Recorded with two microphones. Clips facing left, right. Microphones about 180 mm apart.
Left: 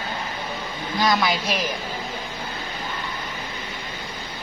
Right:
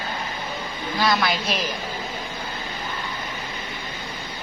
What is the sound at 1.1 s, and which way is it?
Speech, 10° left (ahead or behind).